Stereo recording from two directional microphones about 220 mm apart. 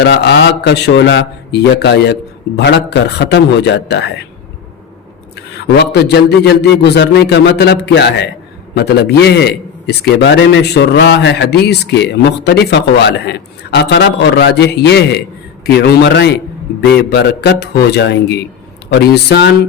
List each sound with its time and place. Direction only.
0.0 s a man's voice: 50° left (ahead or behind)
5.7 s a man's voice: 50° left (ahead or behind)